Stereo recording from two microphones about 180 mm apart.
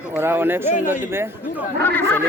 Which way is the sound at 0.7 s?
45° left (ahead or behind).